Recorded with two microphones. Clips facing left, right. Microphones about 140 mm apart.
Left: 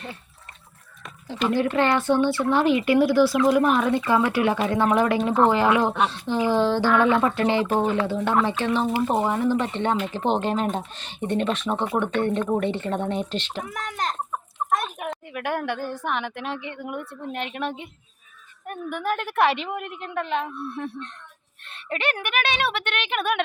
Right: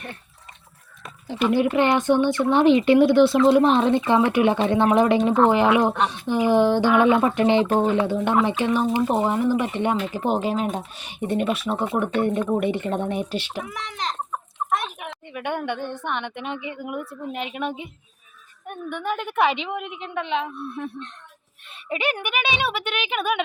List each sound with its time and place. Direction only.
1.4 s a woman's voice: 15° right (ahead or behind)
13.7 s a child's voice: 50° left (ahead or behind)
14.7 s a sound: 45° left (ahead or behind)
15.3 s a woman's voice: centre (ahead or behind)